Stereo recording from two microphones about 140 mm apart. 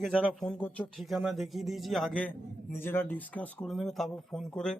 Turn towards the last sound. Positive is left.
turn(degrees=5)  # may be behind; listen again after turning